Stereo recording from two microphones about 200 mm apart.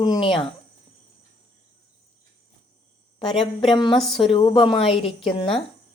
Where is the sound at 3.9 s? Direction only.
Centre (ahead or behind).